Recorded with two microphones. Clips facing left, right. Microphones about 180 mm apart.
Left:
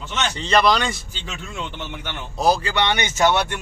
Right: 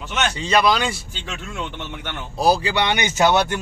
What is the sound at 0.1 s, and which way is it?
Speech, 5° right (ahead or behind).